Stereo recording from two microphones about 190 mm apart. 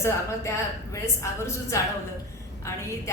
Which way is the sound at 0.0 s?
15° left (ahead or behind).